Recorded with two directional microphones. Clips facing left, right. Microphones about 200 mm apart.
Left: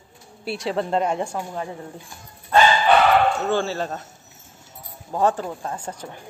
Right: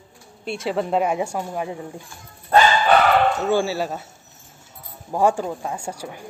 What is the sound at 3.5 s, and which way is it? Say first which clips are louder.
Speech: right 2 dB; 10° right (ahead or behind).